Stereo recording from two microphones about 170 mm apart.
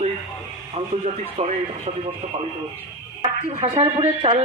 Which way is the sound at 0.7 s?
40° right (ahead or behind).